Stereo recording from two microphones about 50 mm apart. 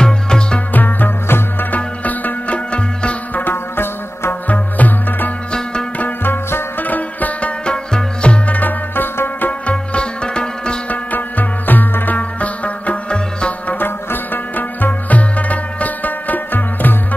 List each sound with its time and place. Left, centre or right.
0.0 s music: centre
0.7 s music: left
1.2 s music: left
1.7 s music: left
3.4 s music: left
4.5 s music: left
7.6 s music: centre
8.5 s music: left
9.5 s sitar: left
10.9 s music: left
13.7 s music: left